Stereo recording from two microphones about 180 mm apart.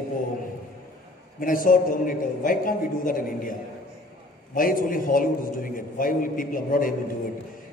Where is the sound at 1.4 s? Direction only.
50° left (ahead or behind).